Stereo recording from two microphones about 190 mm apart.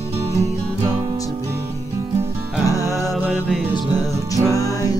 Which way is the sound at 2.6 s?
20° left (ahead or behind).